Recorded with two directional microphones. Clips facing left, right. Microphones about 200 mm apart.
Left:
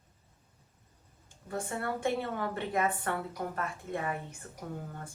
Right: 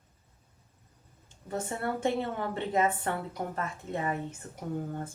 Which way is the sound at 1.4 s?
25° right (ahead or behind).